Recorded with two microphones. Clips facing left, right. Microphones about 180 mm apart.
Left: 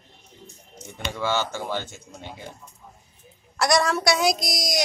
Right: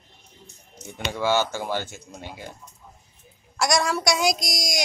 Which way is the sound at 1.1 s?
10° right (ahead or behind).